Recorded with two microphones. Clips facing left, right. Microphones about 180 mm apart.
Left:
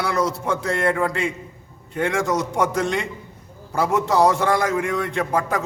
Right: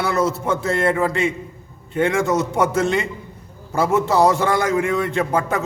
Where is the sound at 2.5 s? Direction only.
5° right (ahead or behind).